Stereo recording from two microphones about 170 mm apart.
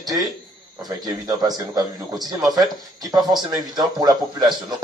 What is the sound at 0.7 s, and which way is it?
A man's voice, 25° right (ahead or behind).